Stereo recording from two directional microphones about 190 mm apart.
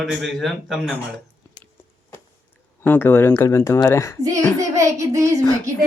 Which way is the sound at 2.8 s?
10° left (ahead or behind).